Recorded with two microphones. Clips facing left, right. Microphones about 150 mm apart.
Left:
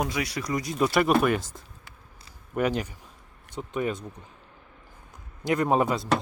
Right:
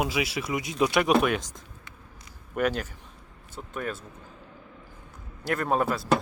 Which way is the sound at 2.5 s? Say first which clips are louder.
Left 1 dB; 10° left (ahead or behind).